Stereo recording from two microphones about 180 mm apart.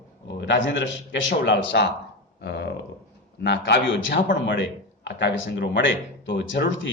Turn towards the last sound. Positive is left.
turn(degrees=85)